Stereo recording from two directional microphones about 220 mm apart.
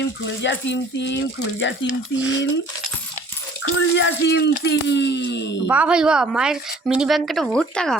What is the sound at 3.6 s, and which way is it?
Speech, 55° left (ahead or behind).